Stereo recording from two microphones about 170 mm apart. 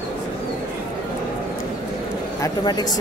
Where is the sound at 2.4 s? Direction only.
25° left (ahead or behind).